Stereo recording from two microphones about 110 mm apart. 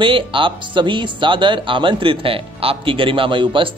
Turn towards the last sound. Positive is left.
turn(degrees=-50)  # may be behind; listen again after turning